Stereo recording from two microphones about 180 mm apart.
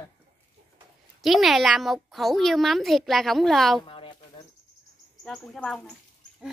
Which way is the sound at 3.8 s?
30° left (ahead or behind).